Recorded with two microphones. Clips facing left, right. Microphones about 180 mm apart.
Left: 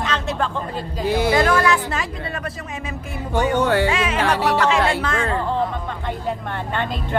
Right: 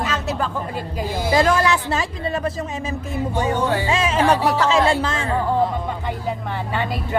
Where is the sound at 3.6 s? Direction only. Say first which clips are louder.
Left 5 dB; 70° left (ahead or behind).